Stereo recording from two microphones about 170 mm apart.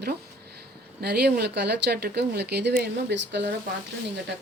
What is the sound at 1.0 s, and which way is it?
Speech, 70° right (ahead or behind).